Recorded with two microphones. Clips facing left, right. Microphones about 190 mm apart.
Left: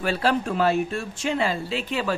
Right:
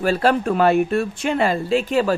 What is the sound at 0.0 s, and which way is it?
Speech, 50° right (ahead or behind).